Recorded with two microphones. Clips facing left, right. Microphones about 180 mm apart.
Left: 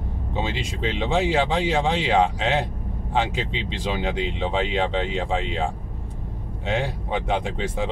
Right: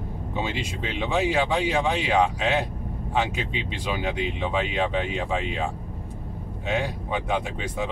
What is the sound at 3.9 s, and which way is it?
Speech, 25° left (ahead or behind).